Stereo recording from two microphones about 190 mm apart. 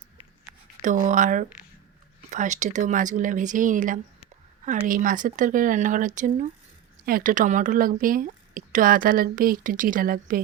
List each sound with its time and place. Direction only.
0.8 s speech: 40° right (ahead or behind)